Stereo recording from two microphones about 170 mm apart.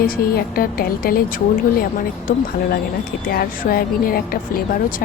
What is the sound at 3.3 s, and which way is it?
Music, 60° left (ahead or behind).